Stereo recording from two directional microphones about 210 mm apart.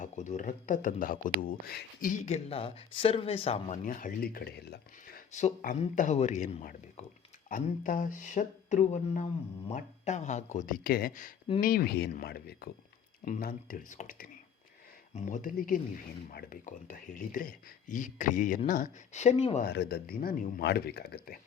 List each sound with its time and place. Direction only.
0.0 s speech: 35° left (ahead or behind)
3.8 s speech: 40° left (ahead or behind)
5.3 s speech: 35° left (ahead or behind)
19.6 s speech: 50° left (ahead or behind)